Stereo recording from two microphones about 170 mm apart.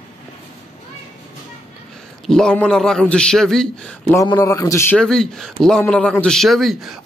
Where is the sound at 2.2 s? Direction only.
5° left (ahead or behind).